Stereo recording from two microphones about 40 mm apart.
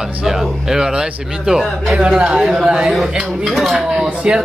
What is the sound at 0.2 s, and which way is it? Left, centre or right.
Speech, centre.